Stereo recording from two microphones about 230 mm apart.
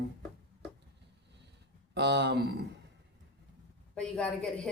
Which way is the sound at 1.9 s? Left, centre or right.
Right.